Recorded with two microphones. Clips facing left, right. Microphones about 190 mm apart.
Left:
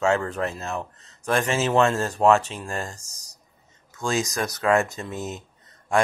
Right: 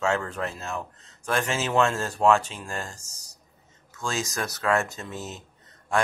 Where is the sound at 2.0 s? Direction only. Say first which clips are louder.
Left 4 dB; 40° left (ahead or behind).